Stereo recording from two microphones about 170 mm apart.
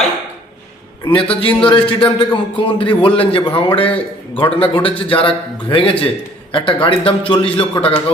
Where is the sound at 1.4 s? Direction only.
30° left (ahead or behind).